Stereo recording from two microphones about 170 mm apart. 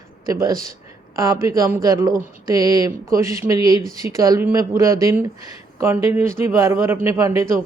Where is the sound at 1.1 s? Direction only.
20° right (ahead or behind).